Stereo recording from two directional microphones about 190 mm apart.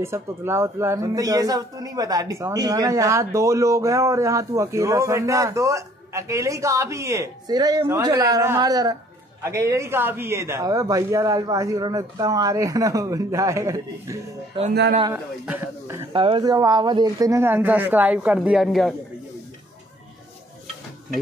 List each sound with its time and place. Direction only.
0.0 s speech: 15° right (ahead or behind)
14.5 s a man's voice: 25° right (ahead or behind)
15.4 s speech: 10° right (ahead or behind)
16.1 s speech: 25° right (ahead or behind); by 18.9 s centre (ahead or behind)